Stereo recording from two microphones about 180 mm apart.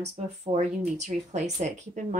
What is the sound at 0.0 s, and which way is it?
Speech, 35° right (ahead or behind).